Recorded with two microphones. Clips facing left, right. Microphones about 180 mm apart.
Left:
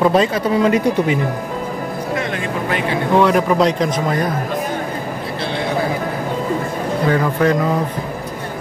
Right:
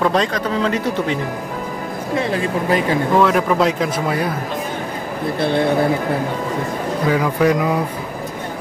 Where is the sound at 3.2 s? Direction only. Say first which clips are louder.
Left 4 dB; centre (ahead or behind).